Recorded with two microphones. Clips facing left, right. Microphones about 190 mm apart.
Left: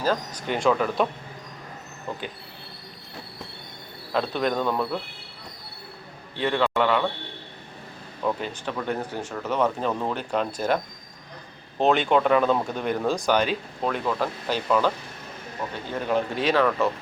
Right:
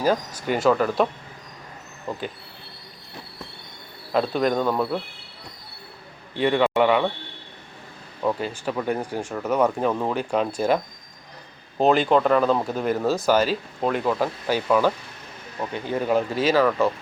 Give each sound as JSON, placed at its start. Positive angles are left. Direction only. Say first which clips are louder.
{"t": 0.0, "sound": "speech", "louder": "right 3 dB", "side_deg": -10}
{"t": 4.1, "sound": "speech", "louder": "right 3 dB", "side_deg": -5}
{"t": 6.4, "sound": "a man's voice", "louder": "right 4 dB", "side_deg": -10}
{"t": 8.2, "sound": "speech", "louder": "right 3 dB", "side_deg": -10}
{"t": 11.8, "sound": "speech", "louder": "right 2 dB", "side_deg": 0}
{"t": 16.0, "sound": "speech", "louder": "right 3 dB", "side_deg": -5}